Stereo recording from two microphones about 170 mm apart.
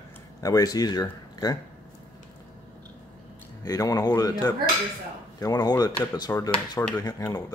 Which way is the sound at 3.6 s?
20° left (ahead or behind).